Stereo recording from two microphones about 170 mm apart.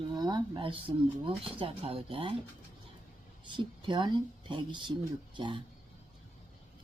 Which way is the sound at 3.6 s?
25° right (ahead or behind).